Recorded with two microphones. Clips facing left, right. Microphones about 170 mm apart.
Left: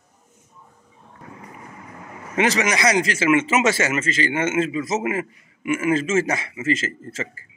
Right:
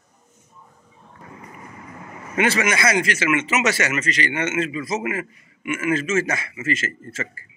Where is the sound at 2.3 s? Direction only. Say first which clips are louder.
Even; 25° left (ahead or behind).